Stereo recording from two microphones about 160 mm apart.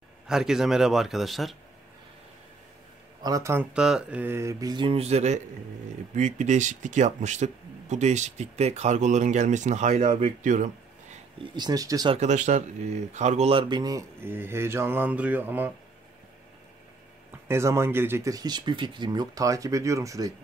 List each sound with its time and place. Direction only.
0.3 s a man's voice: 5° right (ahead or behind)
3.2 s speech: 25° right (ahead or behind)
3.7 s speech: 5° right (ahead or behind); by 10.0 s 45° right (ahead or behind)
10.4 s a sound: 50° right (ahead or behind)
11.5 s speech: 25° right (ahead or behind)
12.1 s speech: 45° right (ahead or behind); by 15.7 s 10° right (ahead or behind)
17.5 s speech: 15° right (ahead or behind)